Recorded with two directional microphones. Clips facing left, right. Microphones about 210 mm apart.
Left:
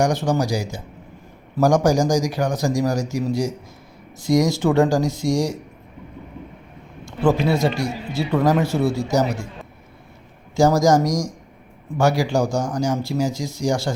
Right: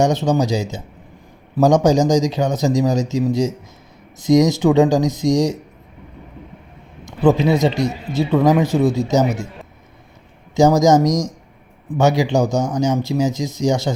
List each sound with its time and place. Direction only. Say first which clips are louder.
0.0 s speech: right 3 dB; 20° right (ahead or behind)
7.0 s a man's voice: right 4 dB; 20° right (ahead or behind)
10.5 s speech: right 3 dB; 20° right (ahead or behind)